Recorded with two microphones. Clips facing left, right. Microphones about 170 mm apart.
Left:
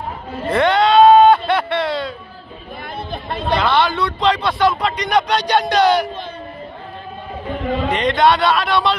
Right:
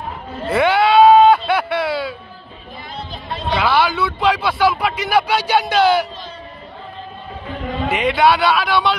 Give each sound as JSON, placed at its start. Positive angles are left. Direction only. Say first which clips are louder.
{"t": 0.5, "sound": "a sound", "louder": "even", "side_deg": -5}
{"t": 2.8, "sound": "chatter", "louder": "left 4 dB", "side_deg": 55}
{"t": 3.5, "sound": "speech", "louder": "even", "side_deg": -5}
{"t": 7.9, "sound": "speech", "louder": "right 1 dB", "side_deg": -5}